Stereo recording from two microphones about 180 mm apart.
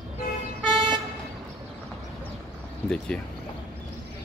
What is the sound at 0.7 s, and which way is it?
Vehicle, 25° right (ahead or behind).